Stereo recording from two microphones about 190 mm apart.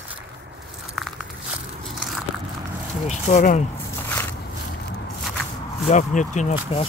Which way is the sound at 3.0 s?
40° left (ahead or behind).